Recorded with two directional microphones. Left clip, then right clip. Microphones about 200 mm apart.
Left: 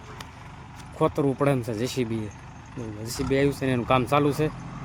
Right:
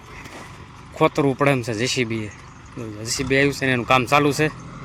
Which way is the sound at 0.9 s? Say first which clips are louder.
Right 5 dB; 5° right (ahead or behind).